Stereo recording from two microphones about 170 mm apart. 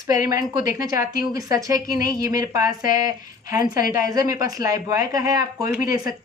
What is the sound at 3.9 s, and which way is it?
Speech, 20° right (ahead or behind).